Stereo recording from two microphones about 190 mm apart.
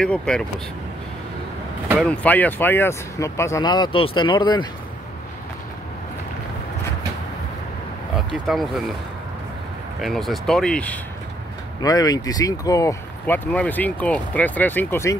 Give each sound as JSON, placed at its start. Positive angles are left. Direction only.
{"t": 0.0, "sound": "speech", "side_deg": 5}
{"t": 2.0, "sound": "speech", "side_deg": 10}
{"t": 8.5, "sound": "speech", "side_deg": 0}
{"t": 10.0, "sound": "speech", "side_deg": 0}
{"t": 11.8, "sound": "speech", "side_deg": 20}